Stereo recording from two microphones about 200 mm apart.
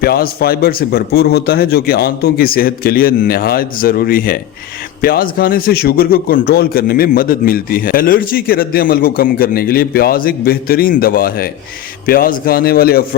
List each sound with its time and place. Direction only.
0.0 s a man's voice: 50° left (ahead or behind)